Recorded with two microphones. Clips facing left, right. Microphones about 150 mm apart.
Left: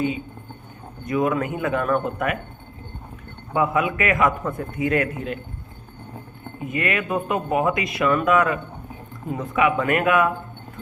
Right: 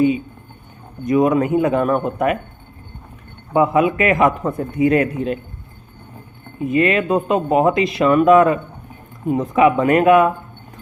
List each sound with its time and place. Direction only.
1.0 s a man's voice: 20° right (ahead or behind)
3.5 s a man's voice: 25° right (ahead or behind)
6.7 s a man's voice: 25° right (ahead or behind)